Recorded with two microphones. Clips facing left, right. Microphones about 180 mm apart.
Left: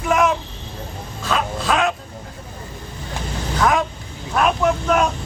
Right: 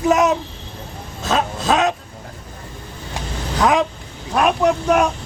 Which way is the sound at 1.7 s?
20° right (ahead or behind).